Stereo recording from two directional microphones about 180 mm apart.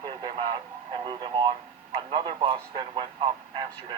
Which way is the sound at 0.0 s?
25° right (ahead or behind).